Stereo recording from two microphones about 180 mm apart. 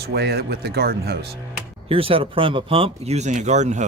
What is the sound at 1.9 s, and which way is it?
Speech, 30° right (ahead or behind).